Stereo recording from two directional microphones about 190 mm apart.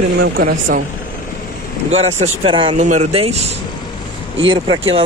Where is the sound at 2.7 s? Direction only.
40° right (ahead or behind).